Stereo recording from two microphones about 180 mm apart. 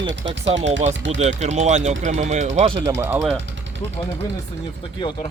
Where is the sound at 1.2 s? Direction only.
40° right (ahead or behind).